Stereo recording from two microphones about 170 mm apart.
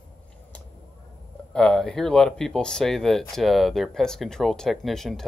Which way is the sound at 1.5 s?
5° left (ahead or behind).